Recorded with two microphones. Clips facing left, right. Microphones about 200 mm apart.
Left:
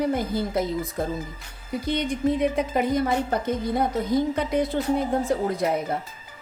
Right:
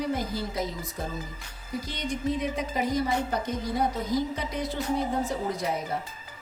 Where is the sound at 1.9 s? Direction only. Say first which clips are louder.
Left 7 dB; 55° left (ahead or behind).